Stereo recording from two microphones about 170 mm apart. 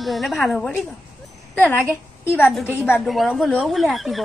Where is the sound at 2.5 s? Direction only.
Centre (ahead or behind).